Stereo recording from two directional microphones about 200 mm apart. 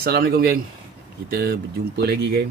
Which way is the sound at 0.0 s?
50° right (ahead or behind).